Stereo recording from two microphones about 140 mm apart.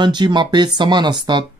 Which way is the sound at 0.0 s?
35° right (ahead or behind).